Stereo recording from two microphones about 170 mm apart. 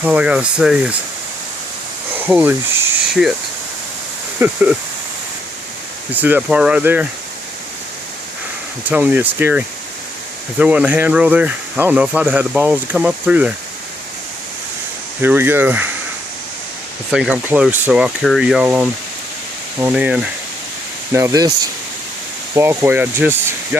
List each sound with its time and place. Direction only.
0.0 s speech: 5° right (ahead or behind)
2.1 s speech: 10° right (ahead or behind)
4.4 s speech: 10° right (ahead or behind)
6.2 s speech: 10° right (ahead or behind)
8.8 s speech: 10° right (ahead or behind)
15.2 s speech: 10° right (ahead or behind)
17.1 s speech: 5° right (ahead or behind)
21.1 s speech: 15° right (ahead or behind)
22.5 s speech: 15° right (ahead or behind)